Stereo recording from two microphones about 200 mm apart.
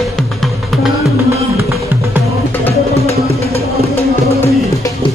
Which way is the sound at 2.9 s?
30° left (ahead or behind).